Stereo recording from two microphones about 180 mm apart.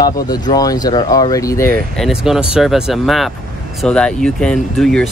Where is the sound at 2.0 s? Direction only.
5° right (ahead or behind).